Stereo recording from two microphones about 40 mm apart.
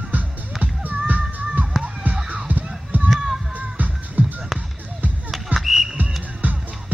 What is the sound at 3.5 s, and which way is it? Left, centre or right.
Music, right.